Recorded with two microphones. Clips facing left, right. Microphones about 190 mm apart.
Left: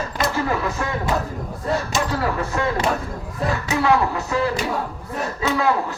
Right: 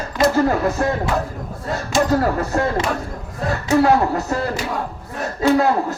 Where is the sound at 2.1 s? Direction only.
45° right (ahead or behind).